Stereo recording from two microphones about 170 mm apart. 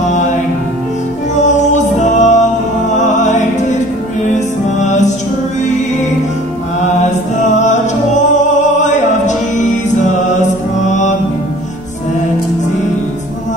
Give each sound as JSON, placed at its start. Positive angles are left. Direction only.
{"t": 1.3, "sound": "music", "side_deg": 45}
{"t": 4.8, "sound": "music", "side_deg": 45}
{"t": 7.0, "sound": "music", "side_deg": 45}
{"t": 8.8, "sound": "music", "side_deg": 45}
{"t": 10.9, "sound": "music", "side_deg": 45}